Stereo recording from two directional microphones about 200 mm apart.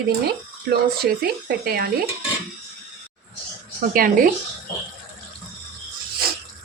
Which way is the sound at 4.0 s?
45° right (ahead or behind).